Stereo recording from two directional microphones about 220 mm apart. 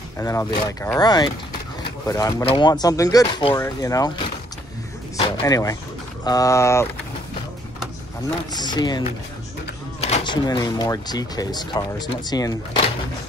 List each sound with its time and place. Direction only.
0.2 s speech: 15° left (ahead or behind)
5.4 s speech: 15° left (ahead or behind)
8.5 s speech: 20° left (ahead or behind)